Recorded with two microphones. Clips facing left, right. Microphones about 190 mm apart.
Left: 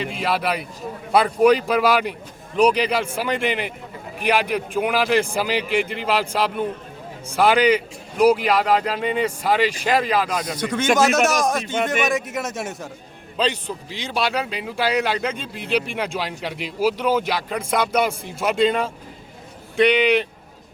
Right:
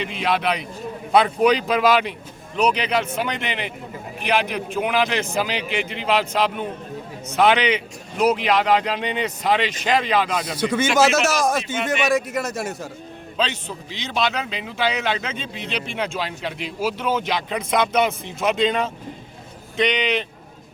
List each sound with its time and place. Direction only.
0.0 s a man's voice: 5° left (ahead or behind)
5.6 s a man's voice: 50° left (ahead or behind)
6.1 s a man's voice: 10° left (ahead or behind)
13.3 s a man's voice: 10° left (ahead or behind)